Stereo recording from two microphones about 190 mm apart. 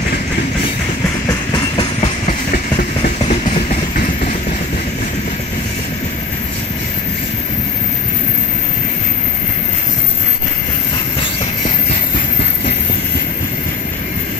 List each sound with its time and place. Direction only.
1.5 s train: 25° left (ahead or behind)
2.2 s train: 45° left (ahead or behind)